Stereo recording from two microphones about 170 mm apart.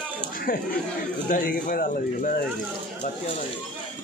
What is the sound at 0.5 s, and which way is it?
Speech, 55° left (ahead or behind).